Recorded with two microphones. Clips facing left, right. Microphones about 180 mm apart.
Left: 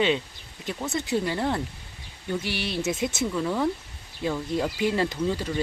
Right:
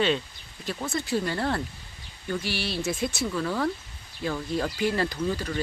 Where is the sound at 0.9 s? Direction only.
20° left (ahead or behind).